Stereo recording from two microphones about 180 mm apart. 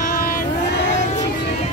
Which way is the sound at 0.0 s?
55° left (ahead or behind).